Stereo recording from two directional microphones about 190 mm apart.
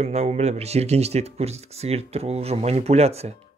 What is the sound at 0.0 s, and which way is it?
Speech, 35° right (ahead or behind).